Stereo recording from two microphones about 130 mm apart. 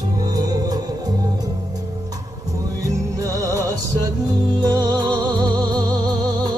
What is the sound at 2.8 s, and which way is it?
Music, 25° right (ahead or behind).